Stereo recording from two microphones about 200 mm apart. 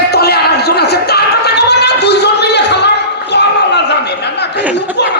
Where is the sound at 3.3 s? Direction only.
55° left (ahead or behind).